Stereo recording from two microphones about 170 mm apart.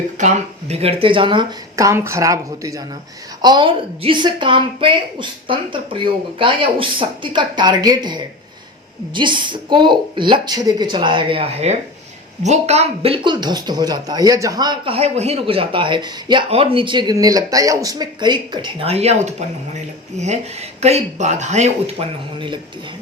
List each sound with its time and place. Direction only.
0.2 s speech: 40° right (ahead or behind)
1.7 s speech: 15° right (ahead or behind); by 22.0 s 40° right (ahead or behind)
22.4 s speech: 30° right (ahead or behind)